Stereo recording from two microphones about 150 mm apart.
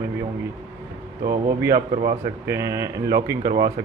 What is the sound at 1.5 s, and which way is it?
Speech, 20° right (ahead or behind).